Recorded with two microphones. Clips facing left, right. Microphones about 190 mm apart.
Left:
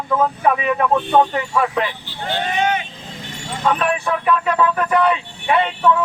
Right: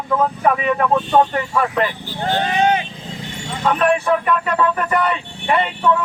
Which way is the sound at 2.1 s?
45° right (ahead or behind).